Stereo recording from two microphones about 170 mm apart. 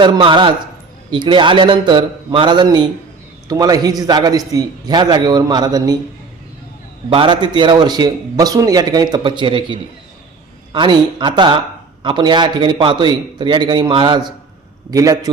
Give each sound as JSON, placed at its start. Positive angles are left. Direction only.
{"t": 0.0, "sound": "a man's voice", "side_deg": -30}
{"t": 7.1, "sound": "a man's voice", "side_deg": -30}